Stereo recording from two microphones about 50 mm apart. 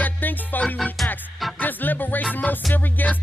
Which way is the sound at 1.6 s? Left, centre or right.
Left.